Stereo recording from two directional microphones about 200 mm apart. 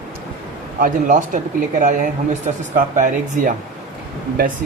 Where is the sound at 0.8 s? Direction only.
40° right (ahead or behind).